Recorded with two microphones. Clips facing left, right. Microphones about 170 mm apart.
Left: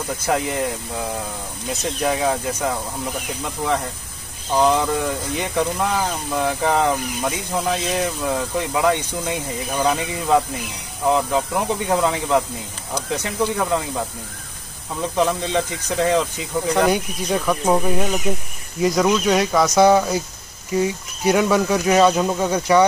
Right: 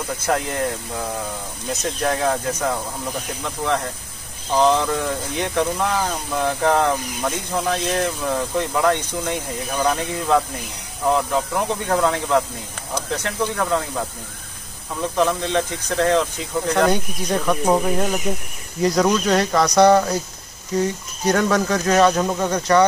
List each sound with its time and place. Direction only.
0.3 s speech: 5° left (ahead or behind)
4.6 s speech: 10° left (ahead or behind)
15.1 s speech: 10° left (ahead or behind)